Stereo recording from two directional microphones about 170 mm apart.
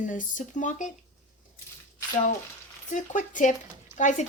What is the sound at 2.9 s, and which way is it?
Speech, 50° left (ahead or behind).